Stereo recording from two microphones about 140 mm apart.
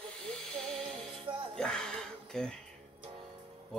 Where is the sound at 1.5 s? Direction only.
5° left (ahead or behind).